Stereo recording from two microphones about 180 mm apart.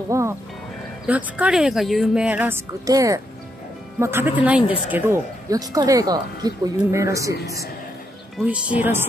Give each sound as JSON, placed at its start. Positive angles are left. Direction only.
{"t": 0.1, "sound": "speech", "side_deg": -15}
{"t": 8.4, "sound": "speech", "side_deg": -5}